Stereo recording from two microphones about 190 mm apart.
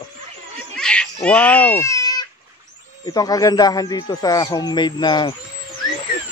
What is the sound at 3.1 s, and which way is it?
Speech, 20° left (ahead or behind).